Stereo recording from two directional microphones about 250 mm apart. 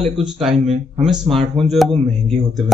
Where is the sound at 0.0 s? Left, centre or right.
Centre.